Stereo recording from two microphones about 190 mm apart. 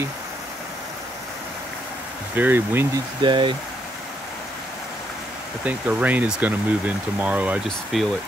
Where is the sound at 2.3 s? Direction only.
10° right (ahead or behind).